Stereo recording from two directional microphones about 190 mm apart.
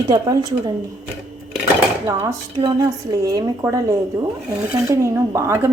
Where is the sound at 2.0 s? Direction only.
20° right (ahead or behind).